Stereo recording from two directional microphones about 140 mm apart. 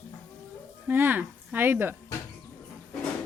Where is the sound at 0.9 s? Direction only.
15° right (ahead or behind).